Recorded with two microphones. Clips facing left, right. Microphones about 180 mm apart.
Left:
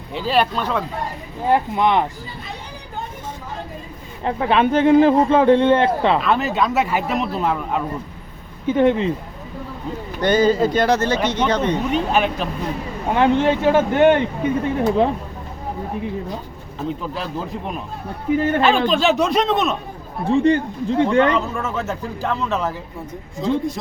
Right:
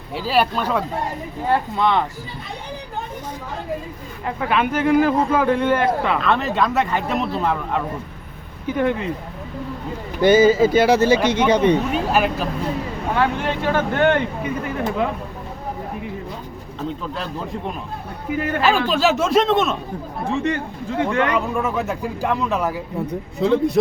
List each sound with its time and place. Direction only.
0.1 s a man's voice: 5° right (ahead or behind)
1.5 s speech: 15° left (ahead or behind)
4.2 s speech: 30° left (ahead or behind)
6.2 s a man's voice: 5° left (ahead or behind)
8.6 s speech: 25° left (ahead or behind)
10.2 s speech: 10° right (ahead or behind)
13.1 s speech: 20° left (ahead or behind)
17.2 s a man's voice: 5° left (ahead or behind)
18.3 s speech: 30° left (ahead or behind)
18.9 s a man's voice: 5° right (ahead or behind)
20.3 s speech: 30° left (ahead or behind)
21.3 s speech: 15° right (ahead or behind)
23.4 s a man's voice: 65° right (ahead or behind)